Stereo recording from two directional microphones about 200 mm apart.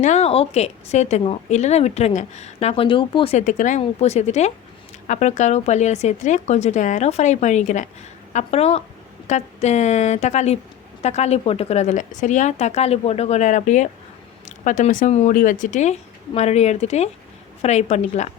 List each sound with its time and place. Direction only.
0.0 s a woman's voice: 35° left (ahead or behind)